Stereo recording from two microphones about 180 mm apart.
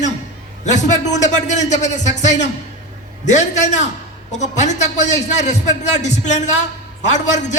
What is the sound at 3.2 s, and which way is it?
A man's voice, 40° left (ahead or behind).